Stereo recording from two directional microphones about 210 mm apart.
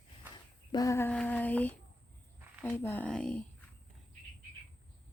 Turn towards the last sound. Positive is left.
turn(degrees=5)  # may be behind; listen again after turning